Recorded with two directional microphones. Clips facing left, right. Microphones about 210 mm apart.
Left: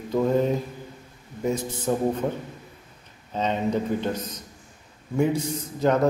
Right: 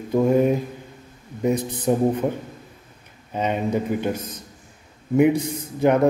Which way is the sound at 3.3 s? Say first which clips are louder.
Right 2 dB; 10° right (ahead or behind).